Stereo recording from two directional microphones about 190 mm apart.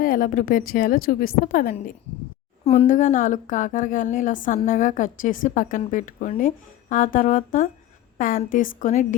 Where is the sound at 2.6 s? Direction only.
35° left (ahead or behind).